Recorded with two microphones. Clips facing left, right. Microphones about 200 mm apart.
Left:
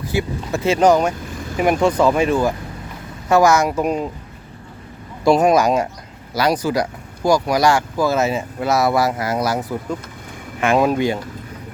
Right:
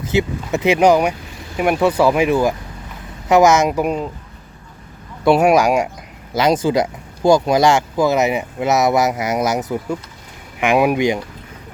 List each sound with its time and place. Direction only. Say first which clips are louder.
0.0 s speech: right 3 dB; 20° right (ahead or behind)
5.2 s speech: right 1 dB; 5° right (ahead or behind)